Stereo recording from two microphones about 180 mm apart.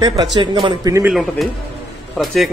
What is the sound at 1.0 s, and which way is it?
A man's voice, 5° right (ahead or behind).